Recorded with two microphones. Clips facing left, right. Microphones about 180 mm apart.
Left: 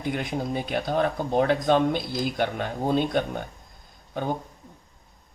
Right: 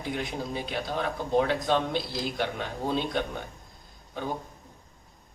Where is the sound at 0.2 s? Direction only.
50° left (ahead or behind).